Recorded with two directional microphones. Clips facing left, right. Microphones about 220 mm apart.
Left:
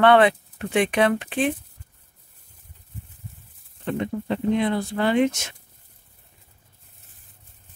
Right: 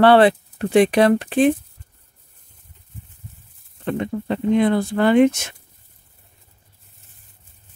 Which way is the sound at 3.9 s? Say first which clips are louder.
Right 2 dB; 50° right (ahead or behind).